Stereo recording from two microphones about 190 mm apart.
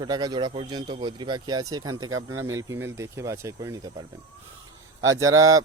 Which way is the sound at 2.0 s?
90° right.